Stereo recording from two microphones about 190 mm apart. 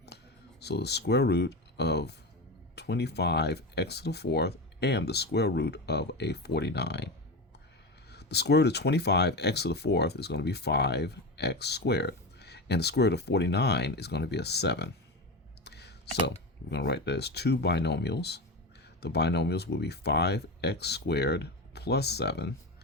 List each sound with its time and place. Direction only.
0.6 s speech: 60° left (ahead or behind)
8.1 s speech: 60° left (ahead or behind)
15.6 s clicking: 60° left (ahead or behind)
16.6 s speech: 65° left (ahead or behind)